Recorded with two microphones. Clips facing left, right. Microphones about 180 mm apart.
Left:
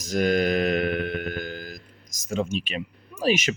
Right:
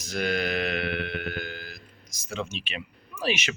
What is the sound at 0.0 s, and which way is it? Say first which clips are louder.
Music: left 6 dB; 40° left (ahead or behind).